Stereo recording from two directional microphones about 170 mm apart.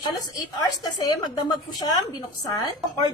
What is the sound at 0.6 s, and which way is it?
A woman's voice, 20° left (ahead or behind).